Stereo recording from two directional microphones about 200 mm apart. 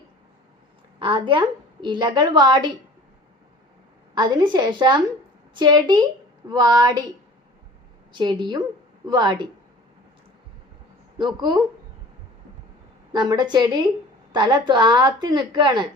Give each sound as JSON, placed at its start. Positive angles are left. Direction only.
{"t": 0.9, "sound": "a woman's voice", "side_deg": -25}
{"t": 4.1, "sound": "a woman's voice", "side_deg": -20}
{"t": 8.1, "sound": "a woman's voice", "side_deg": -25}
{"t": 11.3, "sound": "a woman's voice", "side_deg": -25}
{"t": 13.1, "sound": "a woman's voice", "side_deg": -20}